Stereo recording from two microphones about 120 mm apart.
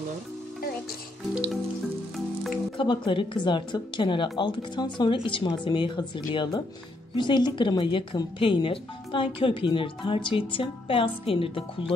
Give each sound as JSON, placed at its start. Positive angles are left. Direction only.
{"t": 1.3, "sound": "music", "side_deg": -10}
{"t": 2.8, "sound": "speech", "side_deg": 45}